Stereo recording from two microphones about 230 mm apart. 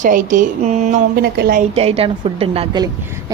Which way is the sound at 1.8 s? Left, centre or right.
Right.